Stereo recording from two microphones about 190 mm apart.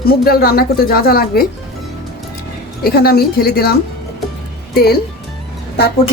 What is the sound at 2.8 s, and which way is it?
Speech, 55° left (ahead or behind).